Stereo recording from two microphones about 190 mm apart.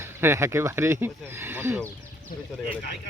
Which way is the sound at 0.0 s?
15° right (ahead or behind).